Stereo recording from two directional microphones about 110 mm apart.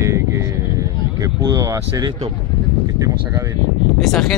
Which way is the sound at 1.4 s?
35° right (ahead or behind).